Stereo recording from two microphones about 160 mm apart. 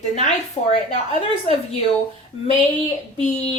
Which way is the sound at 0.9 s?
40° left (ahead or behind).